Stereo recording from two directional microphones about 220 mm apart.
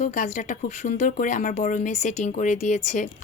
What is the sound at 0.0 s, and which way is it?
Speech, 35° left (ahead or behind).